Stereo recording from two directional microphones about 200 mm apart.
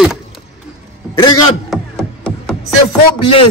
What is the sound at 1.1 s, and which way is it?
Speech, 20° left (ahead or behind).